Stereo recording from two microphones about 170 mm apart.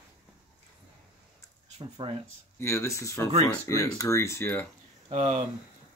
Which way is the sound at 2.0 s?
35° right (ahead or behind).